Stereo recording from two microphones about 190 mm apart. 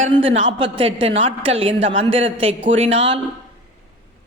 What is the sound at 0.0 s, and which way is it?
A woman's voice, 30° right (ahead or behind).